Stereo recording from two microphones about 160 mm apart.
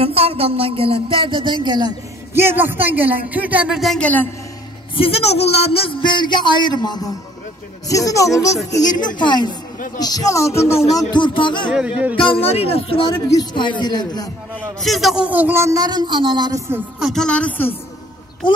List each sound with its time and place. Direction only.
0.0 s speech: 40° right (ahead or behind)
2.3 s a man's voice: 15° right (ahead or behind); by 4.3 s 10° left (ahead or behind)
4.9 s a man's voice: 35° left (ahead or behind)
13.3 s speech: 25° left (ahead or behind)
14.5 s a man's voice: centre (ahead or behind); by 16.8 s 20° right (ahead or behind)
17.0 s speech: 5° left (ahead or behind)